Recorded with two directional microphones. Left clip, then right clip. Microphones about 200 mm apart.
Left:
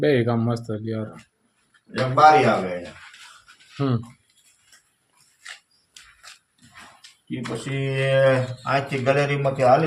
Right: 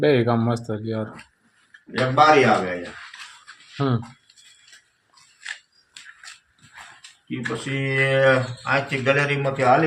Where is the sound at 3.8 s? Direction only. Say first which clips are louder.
Right 1 dB; centre (ahead or behind).